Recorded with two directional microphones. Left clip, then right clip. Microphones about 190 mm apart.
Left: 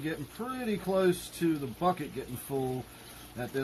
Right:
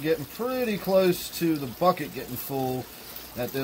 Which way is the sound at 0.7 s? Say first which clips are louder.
Right 5 dB; 20° right (ahead or behind).